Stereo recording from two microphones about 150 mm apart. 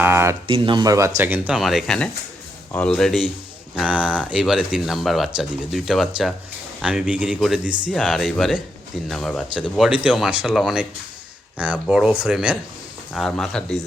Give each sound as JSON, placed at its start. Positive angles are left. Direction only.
{"t": 0.0, "sound": "a sound", "side_deg": -15}
{"t": 0.4, "sound": "speech", "side_deg": -35}
{"t": 1.5, "sound": "speech", "side_deg": 0}